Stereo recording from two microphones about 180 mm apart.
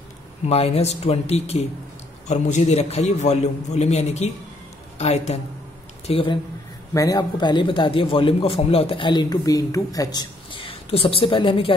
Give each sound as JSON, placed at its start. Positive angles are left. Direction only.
{"t": 0.5, "sound": "a man's voice", "side_deg": 35}
{"t": 6.9, "sound": "a man's voice", "side_deg": 20}